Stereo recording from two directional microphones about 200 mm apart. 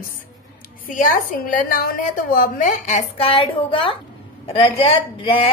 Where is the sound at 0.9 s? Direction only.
40° left (ahead or behind).